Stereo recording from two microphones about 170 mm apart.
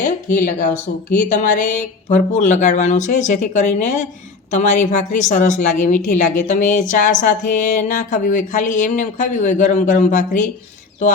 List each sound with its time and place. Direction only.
0.0 s a woman's voice: 50° left (ahead or behind)